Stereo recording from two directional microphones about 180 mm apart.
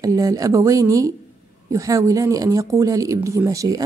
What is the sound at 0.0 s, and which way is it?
Speech, 20° right (ahead or behind).